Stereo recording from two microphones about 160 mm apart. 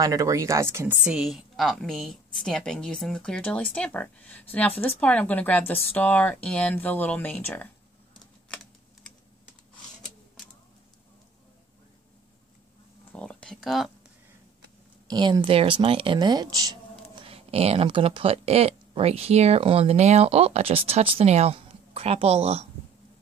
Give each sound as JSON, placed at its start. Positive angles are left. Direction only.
{"t": 0.0, "sound": "speech", "side_deg": -20}
{"t": 1.0, "sound": "a woman's voice", "side_deg": -5}
{"t": 13.1, "sound": "a sound", "side_deg": 5}
{"t": 15.0, "sound": "speech", "side_deg": -25}
{"t": 17.1, "sound": "speech", "side_deg": -35}